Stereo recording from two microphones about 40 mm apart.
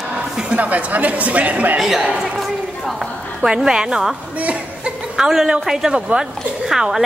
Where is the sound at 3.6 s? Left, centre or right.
Centre.